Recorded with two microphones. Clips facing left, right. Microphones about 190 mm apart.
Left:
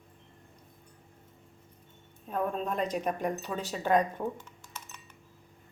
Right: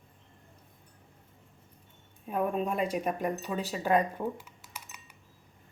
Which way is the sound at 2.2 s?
10° right (ahead or behind).